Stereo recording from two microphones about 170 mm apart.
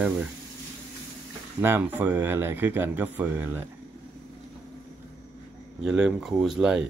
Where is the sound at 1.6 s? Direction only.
10° right (ahead or behind).